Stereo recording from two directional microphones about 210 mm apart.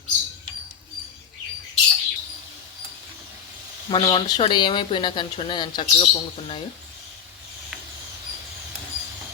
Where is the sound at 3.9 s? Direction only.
20° left (ahead or behind).